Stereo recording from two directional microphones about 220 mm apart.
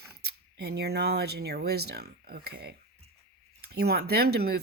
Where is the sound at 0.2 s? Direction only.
45° right (ahead or behind).